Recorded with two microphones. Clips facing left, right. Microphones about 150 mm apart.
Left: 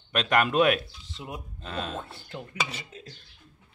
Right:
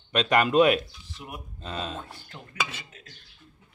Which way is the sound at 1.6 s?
Centre (ahead or behind).